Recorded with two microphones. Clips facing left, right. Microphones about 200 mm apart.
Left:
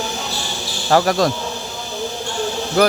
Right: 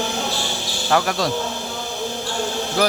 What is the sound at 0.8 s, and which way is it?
Speech, 40° left (ahead or behind).